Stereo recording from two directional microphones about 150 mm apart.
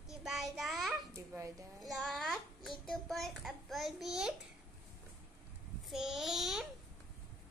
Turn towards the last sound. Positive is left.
turn(degrees=0)  # may be behind; listen again after turning